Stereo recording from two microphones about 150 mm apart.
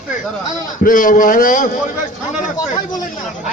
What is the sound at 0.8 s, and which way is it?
Speech, 65° left (ahead or behind).